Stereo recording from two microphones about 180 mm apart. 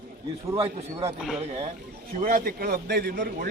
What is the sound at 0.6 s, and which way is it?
Speech, 30° right (ahead or behind).